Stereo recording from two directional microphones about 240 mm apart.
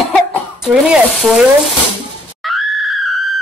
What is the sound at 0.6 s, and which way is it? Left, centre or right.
Speech, centre.